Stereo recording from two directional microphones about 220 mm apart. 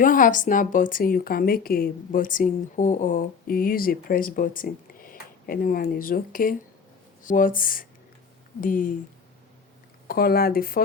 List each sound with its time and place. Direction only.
0.0 s a woman's voice: 40° left (ahead or behind)
10.1 s a woman's voice: 40° left (ahead or behind)